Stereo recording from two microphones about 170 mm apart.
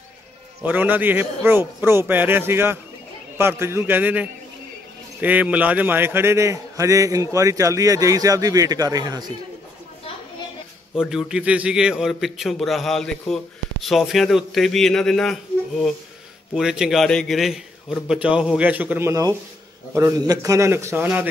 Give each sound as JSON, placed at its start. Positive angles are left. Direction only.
{"t": 0.6, "sound": "a man's voice", "side_deg": -10}
{"t": 11.0, "sound": "a man's voice", "side_deg": -5}